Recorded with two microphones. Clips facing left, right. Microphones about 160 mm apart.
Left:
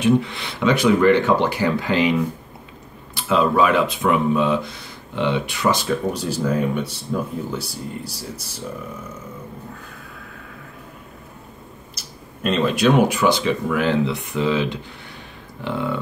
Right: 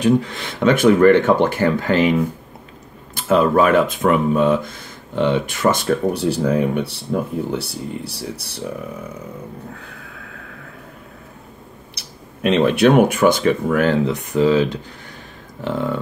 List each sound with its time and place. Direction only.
0.0 s speech: 45° right (ahead or behind)
3.2 s speech: 45° right (ahead or behind); by 8.7 s 65° right (ahead or behind)
11.9 s speech: 65° right (ahead or behind); by 16.0 s 45° right (ahead or behind)